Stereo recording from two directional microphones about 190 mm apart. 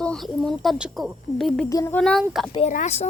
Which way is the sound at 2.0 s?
5° left (ahead or behind).